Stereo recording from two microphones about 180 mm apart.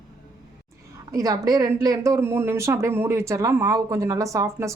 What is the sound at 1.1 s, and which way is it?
Speech, 20° right (ahead or behind).